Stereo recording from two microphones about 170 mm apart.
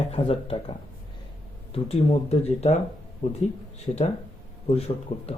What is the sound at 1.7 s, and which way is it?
A man's voice, 35° left (ahead or behind).